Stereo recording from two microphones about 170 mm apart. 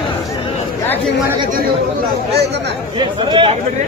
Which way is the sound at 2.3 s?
80° right.